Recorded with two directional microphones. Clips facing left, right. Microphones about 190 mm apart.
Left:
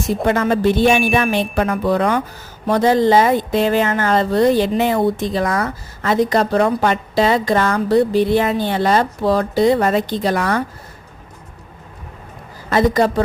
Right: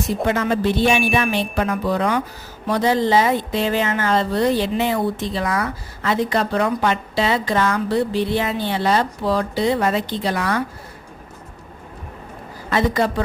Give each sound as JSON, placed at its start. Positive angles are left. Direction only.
{"t": 0.3, "sound": "speech", "side_deg": 45}
{"t": 12.7, "sound": "a woman's voice", "side_deg": 40}